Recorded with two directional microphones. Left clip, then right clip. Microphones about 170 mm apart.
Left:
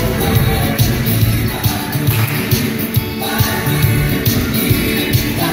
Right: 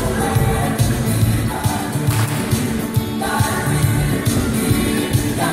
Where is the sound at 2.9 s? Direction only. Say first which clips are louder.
Left 1 dB; 45° left (ahead or behind).